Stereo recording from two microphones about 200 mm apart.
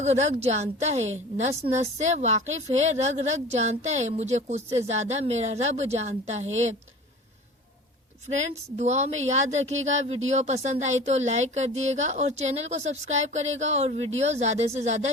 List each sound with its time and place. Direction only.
0.0 s a woman's voice: 35° right (ahead or behind)
8.3 s a woman's voice: 35° right (ahead or behind)